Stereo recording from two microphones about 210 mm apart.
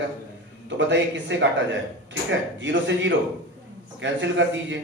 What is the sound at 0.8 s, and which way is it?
Speech, 60° right (ahead or behind).